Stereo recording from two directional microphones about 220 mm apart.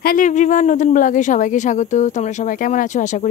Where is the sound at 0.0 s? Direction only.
40° left (ahead or behind).